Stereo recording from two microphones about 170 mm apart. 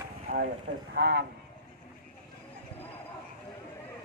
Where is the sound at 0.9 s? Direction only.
80° right.